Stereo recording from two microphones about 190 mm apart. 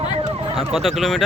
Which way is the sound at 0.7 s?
Centre (ahead or behind).